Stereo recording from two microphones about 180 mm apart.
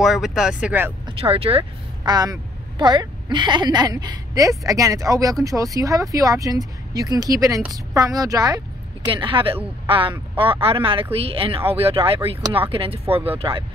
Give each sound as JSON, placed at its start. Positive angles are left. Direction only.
{"t": 0.0, "sound": "speech", "side_deg": 0}
{"t": 1.0, "sound": "a woman's voice", "side_deg": -30}